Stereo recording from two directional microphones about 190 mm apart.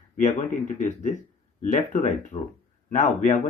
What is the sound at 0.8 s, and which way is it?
Speech, 40° left (ahead or behind).